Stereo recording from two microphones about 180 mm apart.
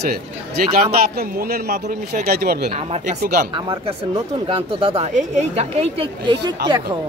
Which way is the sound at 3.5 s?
30° right (ahead or behind).